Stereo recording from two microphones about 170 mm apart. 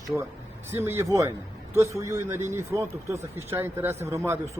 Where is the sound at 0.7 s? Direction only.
15° right (ahead or behind).